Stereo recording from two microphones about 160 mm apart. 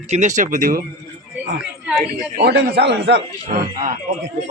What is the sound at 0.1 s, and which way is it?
Speech, 50° right (ahead or behind).